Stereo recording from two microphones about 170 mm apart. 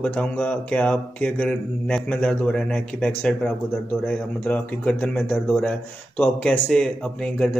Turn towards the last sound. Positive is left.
turn(degrees=5)  # may be behind; listen again after turning